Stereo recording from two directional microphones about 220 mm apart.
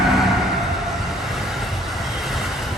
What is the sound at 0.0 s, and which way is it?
Vehicle, centre (ahead or behind).